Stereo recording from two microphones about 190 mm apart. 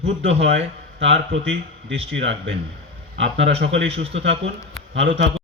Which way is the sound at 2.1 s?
75° right (ahead or behind).